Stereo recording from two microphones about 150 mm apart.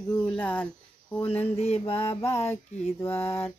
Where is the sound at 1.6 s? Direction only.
45° left (ahead or behind).